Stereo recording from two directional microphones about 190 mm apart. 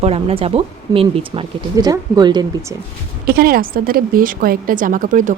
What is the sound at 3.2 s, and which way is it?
A woman's voice, 50° right (ahead or behind).